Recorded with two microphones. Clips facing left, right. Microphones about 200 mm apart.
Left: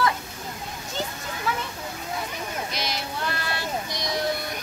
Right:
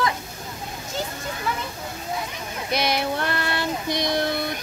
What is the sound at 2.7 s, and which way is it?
Child singing, 60° right (ahead or behind).